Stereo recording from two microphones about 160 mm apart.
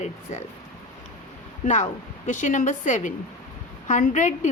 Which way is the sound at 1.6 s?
50° left (ahead or behind).